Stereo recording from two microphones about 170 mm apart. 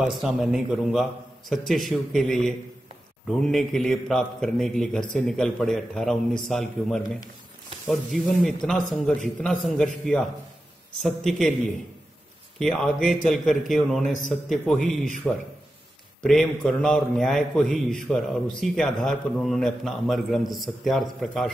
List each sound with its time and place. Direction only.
0.0 s a man's voice: 5° right (ahead or behind)
11.2 s a man's voice: centre (ahead or behind)
12.5 s a man's voice: 5° left (ahead or behind)
14.0 s a man's voice: 50° left (ahead or behind)
14.5 s a man's voice: centre (ahead or behind)